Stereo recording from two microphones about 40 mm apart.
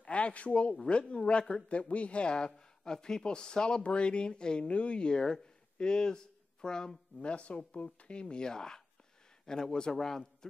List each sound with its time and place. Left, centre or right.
0.0 s a man's voice: left
7.2 s a man's voice: left; by 10.5 s centre